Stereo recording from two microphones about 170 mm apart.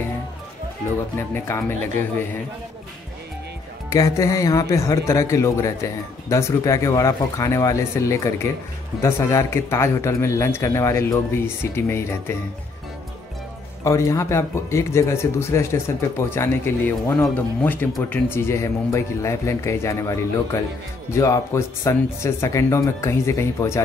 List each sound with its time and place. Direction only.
1.3 s speech: 15° left (ahead or behind)
3.9 s speech: 20° left (ahead or behind)
13.8 s speech: 15° left (ahead or behind)